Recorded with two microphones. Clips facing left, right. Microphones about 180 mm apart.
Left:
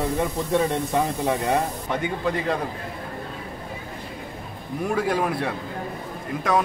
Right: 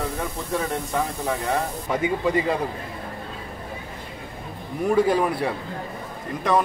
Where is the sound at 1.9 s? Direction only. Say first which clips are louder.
Right 2 dB; 5° right (ahead or behind).